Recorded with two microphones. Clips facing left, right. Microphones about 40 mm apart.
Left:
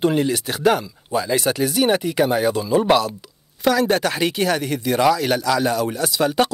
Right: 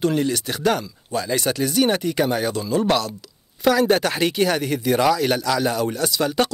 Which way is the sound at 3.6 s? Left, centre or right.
Centre.